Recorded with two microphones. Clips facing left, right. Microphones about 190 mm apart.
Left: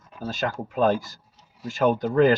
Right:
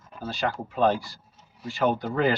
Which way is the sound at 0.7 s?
45° left (ahead or behind).